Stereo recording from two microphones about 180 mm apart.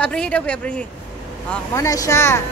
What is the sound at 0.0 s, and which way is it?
Speech, 5° left (ahead or behind).